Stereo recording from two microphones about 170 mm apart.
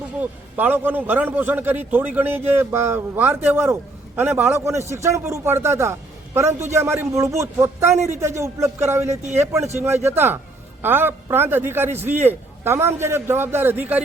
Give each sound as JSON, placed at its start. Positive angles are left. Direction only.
{"t": 0.2, "sound": "a man's voice", "side_deg": -10}